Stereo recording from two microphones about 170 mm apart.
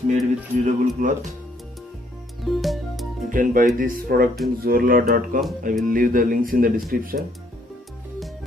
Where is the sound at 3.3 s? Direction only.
50° right (ahead or behind).